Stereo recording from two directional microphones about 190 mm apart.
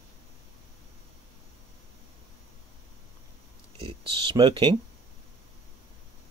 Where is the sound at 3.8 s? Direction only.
25° right (ahead or behind).